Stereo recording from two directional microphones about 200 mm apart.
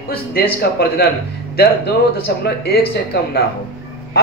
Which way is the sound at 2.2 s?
50° left (ahead or behind).